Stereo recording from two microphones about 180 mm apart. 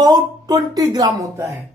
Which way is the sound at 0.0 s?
20° right (ahead or behind).